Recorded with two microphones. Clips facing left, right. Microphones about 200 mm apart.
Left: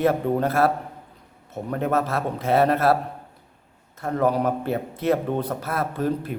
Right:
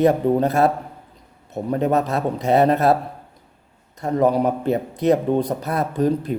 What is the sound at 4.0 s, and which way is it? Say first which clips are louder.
A man's voice: right 4 dB; 15° right (ahead or behind).